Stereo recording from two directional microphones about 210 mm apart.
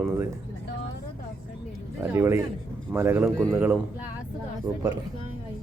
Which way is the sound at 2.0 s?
10° right (ahead or behind).